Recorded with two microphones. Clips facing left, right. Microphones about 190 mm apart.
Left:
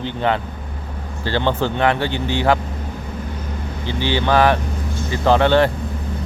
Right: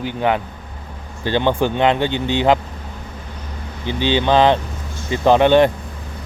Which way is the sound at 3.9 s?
20° right (ahead or behind).